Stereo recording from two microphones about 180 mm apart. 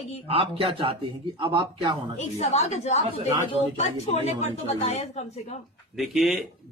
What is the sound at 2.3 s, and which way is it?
A woman's voice, 35° left (ahead or behind).